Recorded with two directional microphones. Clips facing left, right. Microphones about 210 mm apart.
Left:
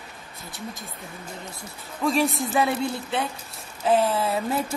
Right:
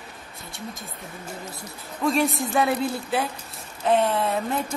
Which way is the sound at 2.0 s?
Centre (ahead or behind).